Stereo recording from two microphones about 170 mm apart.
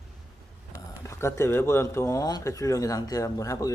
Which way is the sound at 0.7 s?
15° left (ahead or behind).